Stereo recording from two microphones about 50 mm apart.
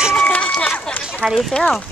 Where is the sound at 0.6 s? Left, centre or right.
Left.